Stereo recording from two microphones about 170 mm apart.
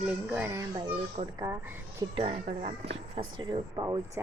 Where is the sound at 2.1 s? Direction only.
30° right (ahead or behind).